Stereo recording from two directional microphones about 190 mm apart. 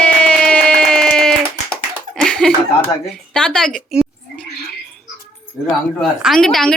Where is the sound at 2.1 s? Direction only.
5° left (ahead or behind).